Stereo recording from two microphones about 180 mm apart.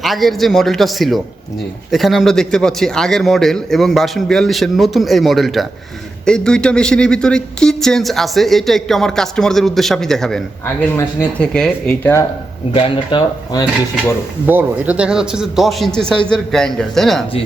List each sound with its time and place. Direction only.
0.0 s speech: centre (ahead or behind)
12.7 s speech: 30° left (ahead or behind)
14.4 s speech: 10° right (ahead or behind)